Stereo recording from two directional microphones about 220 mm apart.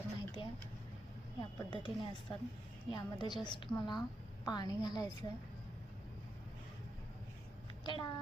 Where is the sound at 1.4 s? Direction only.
20° left (ahead or behind).